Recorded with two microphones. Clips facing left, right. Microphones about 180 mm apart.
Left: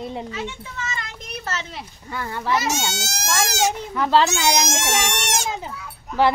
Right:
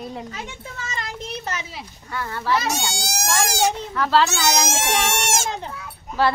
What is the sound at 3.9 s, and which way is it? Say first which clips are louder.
Speech: left 2 dB; 15° left (ahead or behind).